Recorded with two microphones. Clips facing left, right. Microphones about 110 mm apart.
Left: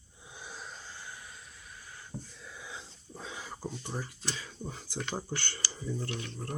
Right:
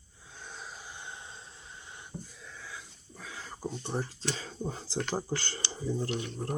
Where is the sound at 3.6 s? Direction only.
20° right (ahead or behind).